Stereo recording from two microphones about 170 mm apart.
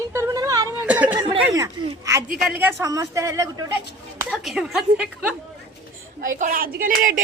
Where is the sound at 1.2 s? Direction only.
25° right (ahead or behind).